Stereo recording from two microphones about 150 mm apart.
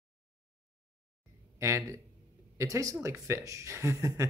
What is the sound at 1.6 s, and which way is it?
Speech, 20° right (ahead or behind).